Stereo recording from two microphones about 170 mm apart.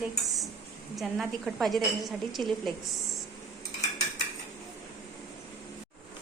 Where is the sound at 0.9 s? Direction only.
Centre (ahead or behind).